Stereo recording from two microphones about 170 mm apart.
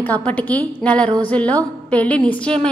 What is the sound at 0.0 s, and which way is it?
A woman's voice, 10° left (ahead or behind).